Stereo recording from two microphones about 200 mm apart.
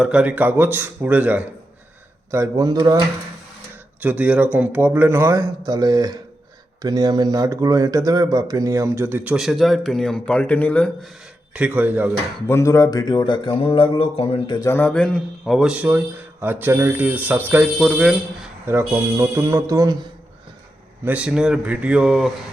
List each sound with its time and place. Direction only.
0.0 s speech: 5° right (ahead or behind)
4.0 s speech: 10° right (ahead or behind)
11.5 s speech: 5° right (ahead or behind)
12.5 s speech: 15° left (ahead or behind)
14.7 s speech: 10° left (ahead or behind)
18.6 s speech: 15° right (ahead or behind)
21.0 s speech: 5° right (ahead or behind)